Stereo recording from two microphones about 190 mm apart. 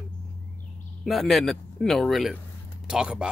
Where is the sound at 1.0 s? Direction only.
Centre (ahead or behind).